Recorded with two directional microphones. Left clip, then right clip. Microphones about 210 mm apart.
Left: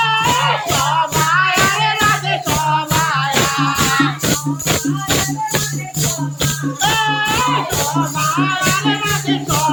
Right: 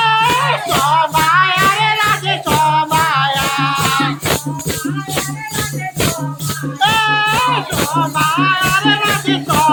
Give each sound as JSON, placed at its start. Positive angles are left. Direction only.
{"t": 0.0, "sound": "music", "side_deg": -20}
{"t": 6.8, "sound": "music", "side_deg": -20}
{"t": 8.4, "sound": "music", "side_deg": -25}